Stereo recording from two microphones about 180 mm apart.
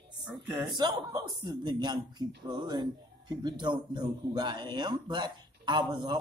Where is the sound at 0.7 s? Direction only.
25° right (ahead or behind).